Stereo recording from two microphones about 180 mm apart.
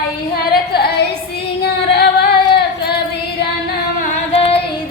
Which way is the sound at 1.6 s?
65° left (ahead or behind).